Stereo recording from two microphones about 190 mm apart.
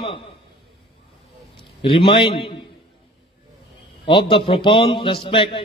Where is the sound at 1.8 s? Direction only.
25° left (ahead or behind).